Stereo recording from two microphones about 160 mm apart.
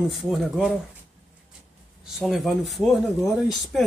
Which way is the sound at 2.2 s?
Centre (ahead or behind).